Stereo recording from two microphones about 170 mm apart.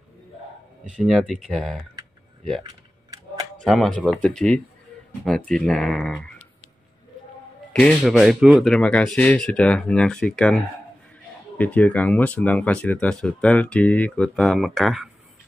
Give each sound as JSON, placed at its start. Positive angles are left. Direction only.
{"t": 0.9, "sound": "speech", "side_deg": 0}
{"t": 2.6, "sound": "computer keyboard", "side_deg": -20}
{"t": 3.6, "sound": "speech", "side_deg": 0}
{"t": 7.8, "sound": "speech", "side_deg": 0}